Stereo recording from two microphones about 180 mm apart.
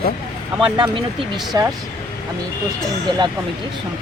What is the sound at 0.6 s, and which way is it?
Speech, 25° right (ahead or behind).